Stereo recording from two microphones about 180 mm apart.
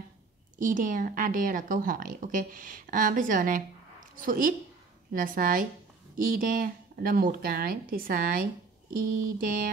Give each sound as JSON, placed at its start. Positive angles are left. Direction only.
{"t": 0.6, "sound": "a woman's voice", "side_deg": -45}